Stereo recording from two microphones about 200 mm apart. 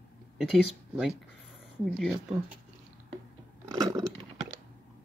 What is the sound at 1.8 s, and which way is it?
Speech, centre (ahead or behind).